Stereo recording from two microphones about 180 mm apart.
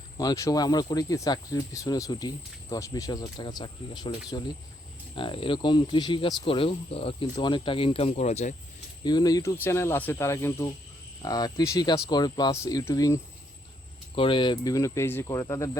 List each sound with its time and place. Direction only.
0.2 s speech: 20° left (ahead or behind)
5.1 s speech: 30° left (ahead or behind)
9.0 s speech: 20° left (ahead or behind)
14.2 s speech: 25° left (ahead or behind)